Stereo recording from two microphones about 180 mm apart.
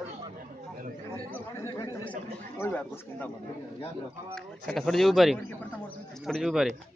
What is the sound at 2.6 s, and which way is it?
Speech, 15° left (ahead or behind).